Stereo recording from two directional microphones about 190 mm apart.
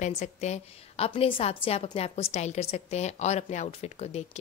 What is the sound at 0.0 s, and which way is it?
A woman's voice, 35° left (ahead or behind).